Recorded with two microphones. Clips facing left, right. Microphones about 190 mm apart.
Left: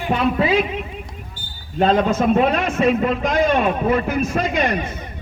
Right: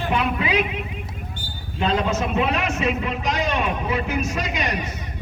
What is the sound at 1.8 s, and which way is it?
A man's voice, 45° left (ahead or behind).